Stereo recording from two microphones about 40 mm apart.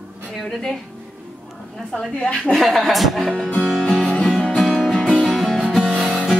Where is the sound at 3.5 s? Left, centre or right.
Left.